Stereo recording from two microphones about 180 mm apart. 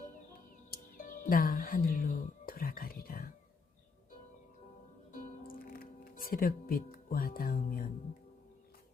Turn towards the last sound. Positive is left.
turn(degrees=55)  # may be behind; listen again after turning